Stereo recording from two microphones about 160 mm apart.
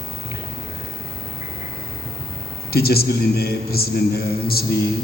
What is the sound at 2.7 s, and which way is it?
A man's voice, 70° left (ahead or behind).